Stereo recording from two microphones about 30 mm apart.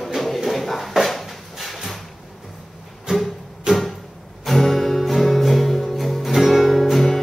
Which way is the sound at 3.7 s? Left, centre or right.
Right.